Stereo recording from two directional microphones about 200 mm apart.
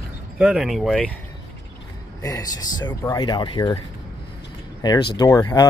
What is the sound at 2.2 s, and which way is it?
Speech, 20° left (ahead or behind).